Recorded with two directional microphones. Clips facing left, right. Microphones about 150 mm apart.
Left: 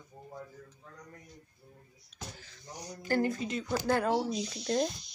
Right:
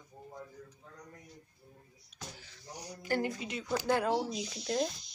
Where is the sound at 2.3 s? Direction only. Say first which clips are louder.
Left 1 dB; 10° right (ahead or behind).